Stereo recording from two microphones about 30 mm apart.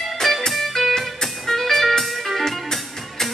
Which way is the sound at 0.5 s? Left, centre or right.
Centre.